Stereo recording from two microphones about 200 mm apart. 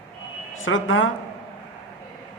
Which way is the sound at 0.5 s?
80° left.